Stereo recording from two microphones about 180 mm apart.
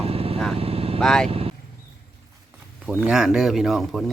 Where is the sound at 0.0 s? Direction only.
35° right (ahead or behind).